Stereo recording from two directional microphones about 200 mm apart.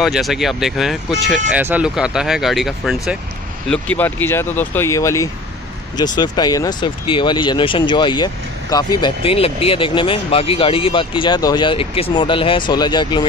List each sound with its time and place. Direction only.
0.0 s speech: centre (ahead or behind); by 13.3 s 20° left (ahead or behind)